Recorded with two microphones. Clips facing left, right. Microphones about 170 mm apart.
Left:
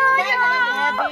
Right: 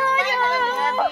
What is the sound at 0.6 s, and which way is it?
Speech, 35° right (ahead or behind).